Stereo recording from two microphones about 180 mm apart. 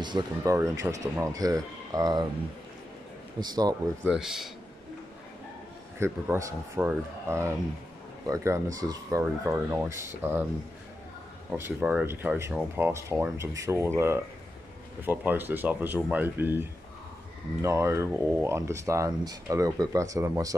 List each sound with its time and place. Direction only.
0.0 s speech: 20° right (ahead or behind)
3.3 s speech: 20° right (ahead or behind)
4.1 s speech: 5° right (ahead or behind)
5.9 s speech: 15° right (ahead or behind)
11.5 s speech: 10° right (ahead or behind)